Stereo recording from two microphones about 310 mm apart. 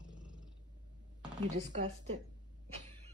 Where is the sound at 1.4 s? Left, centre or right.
Right.